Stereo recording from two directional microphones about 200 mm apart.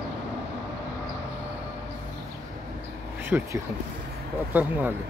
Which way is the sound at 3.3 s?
5° right (ahead or behind).